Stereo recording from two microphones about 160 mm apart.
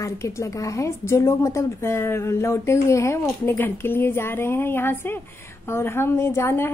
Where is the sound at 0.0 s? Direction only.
20° left (ahead or behind).